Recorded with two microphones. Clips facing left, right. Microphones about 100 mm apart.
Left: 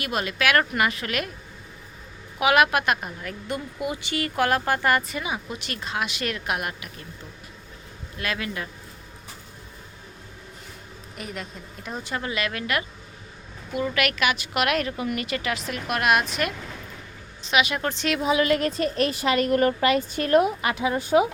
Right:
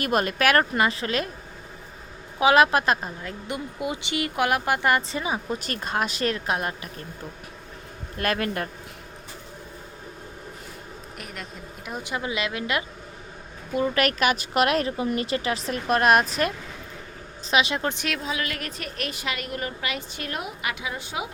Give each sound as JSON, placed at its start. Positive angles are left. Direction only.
{"t": 0.0, "sound": "speech", "side_deg": -45}
{"t": 0.7, "sound": "a woman's voice", "side_deg": -30}
{"t": 2.4, "sound": "a woman's voice", "side_deg": -30}
{"t": 8.2, "sound": "speech", "side_deg": -50}
{"t": 11.2, "sound": "speech", "side_deg": 0}
{"t": 11.9, "sound": "speech", "side_deg": -15}
{"t": 13.7, "sound": "a woman's voice", "side_deg": -35}
{"t": 17.5, "sound": "a woman's voice", "side_deg": -30}
{"t": 18.2, "sound": "a woman's voice", "side_deg": 20}